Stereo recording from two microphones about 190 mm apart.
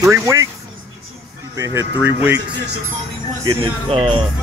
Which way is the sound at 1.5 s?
15° right (ahead or behind).